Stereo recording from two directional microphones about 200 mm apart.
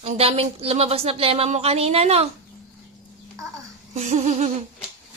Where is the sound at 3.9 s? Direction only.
35° right (ahead or behind).